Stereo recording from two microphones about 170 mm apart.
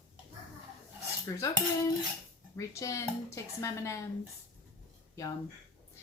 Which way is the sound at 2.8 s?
20° left (ahead or behind).